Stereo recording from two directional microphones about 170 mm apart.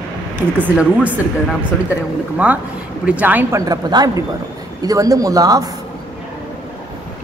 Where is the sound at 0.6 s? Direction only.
10° right (ahead or behind).